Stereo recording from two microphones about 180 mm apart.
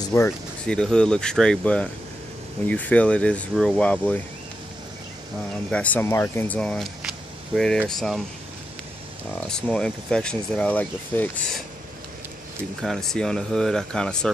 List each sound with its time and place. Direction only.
0.0 s a sound: 15° left (ahead or behind)
0.7 s speech: 5° left (ahead or behind)
5.7 s speech: 10° left (ahead or behind)
9.3 s speech: 5° left (ahead or behind)
12.8 s speech: centre (ahead or behind)